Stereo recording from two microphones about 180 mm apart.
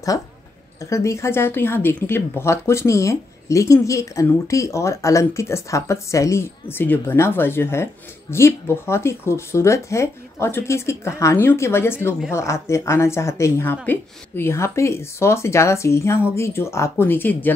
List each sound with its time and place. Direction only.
0.8 s speech: 15° left (ahead or behind)